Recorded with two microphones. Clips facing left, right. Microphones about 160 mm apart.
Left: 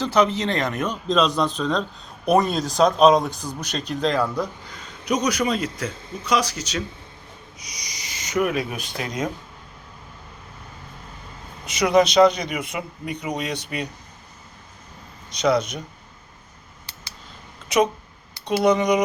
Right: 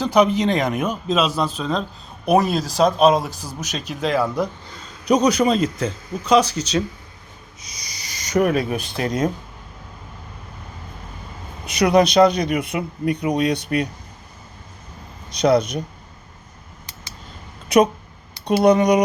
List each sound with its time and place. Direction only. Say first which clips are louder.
0.0 s speech: right 3 dB; 15° right (ahead or behind)
5.0 s a man's voice: right 6 dB; 30° right (ahead or behind)
7.8 s owl: even; 30° right (ahead or behind)
11.6 s speech: right 2 dB; 60° right (ahead or behind)
18.4 s speech: right 4 dB; 55° right (ahead or behind)